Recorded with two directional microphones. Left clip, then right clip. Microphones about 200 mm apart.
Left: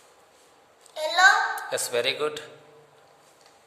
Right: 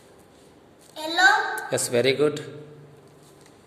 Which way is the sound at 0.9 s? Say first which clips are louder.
Left 1 dB; 40° left (ahead or behind).